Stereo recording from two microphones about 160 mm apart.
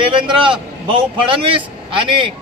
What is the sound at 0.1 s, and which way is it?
A man's voice, 30° right (ahead or behind).